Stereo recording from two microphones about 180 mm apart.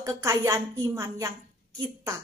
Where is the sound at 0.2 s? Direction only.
15° right (ahead or behind).